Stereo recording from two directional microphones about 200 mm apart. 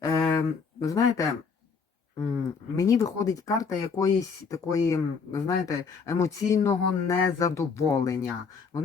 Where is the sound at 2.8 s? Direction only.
15° left (ahead or behind).